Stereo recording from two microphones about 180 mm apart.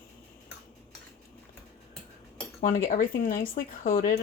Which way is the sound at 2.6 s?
50° left (ahead or behind).